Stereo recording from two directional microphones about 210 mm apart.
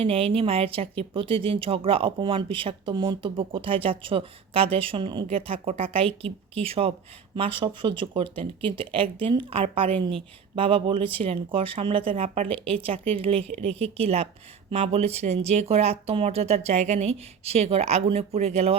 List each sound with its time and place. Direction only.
0.0 s speech: 25° right (ahead or behind)